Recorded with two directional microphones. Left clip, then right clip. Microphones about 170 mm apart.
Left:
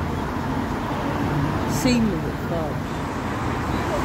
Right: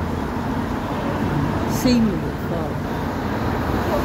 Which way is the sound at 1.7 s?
20° right (ahead or behind).